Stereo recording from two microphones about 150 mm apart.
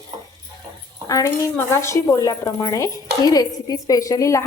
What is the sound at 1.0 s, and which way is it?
A woman's voice, 20° left (ahead or behind).